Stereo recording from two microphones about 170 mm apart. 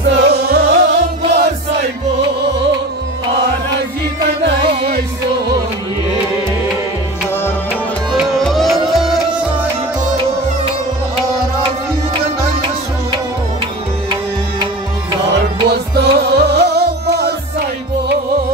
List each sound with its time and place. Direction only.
0.0 s music: 70° right (ahead or behind)
8.1 s music: centre (ahead or behind)
12.4 s music: 25° right (ahead or behind)
15.7 s music: 70° right (ahead or behind)